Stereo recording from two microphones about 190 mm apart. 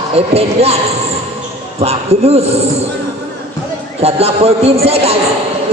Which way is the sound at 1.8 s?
35° right (ahead or behind).